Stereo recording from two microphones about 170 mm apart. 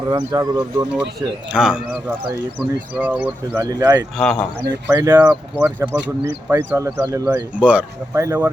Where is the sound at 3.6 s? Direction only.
20° right (ahead or behind).